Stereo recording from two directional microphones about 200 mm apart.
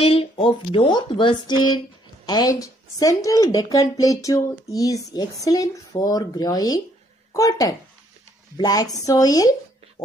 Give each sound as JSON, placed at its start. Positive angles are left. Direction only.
{"t": 0.0, "sound": "speech", "side_deg": 25}